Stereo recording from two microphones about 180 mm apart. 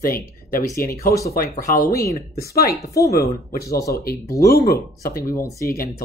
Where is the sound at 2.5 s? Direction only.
60° left (ahead or behind).